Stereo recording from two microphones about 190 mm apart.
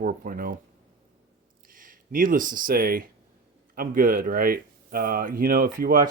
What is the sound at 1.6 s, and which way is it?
Speech, 45° right (ahead or behind).